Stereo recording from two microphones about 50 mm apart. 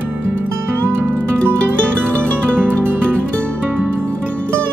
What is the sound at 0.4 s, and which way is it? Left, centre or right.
Music, right.